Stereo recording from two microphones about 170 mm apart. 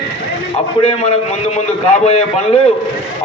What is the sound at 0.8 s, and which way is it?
A man's voice, 40° left (ahead or behind).